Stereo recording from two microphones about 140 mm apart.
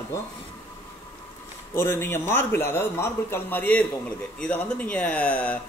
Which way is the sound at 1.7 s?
15° left (ahead or behind).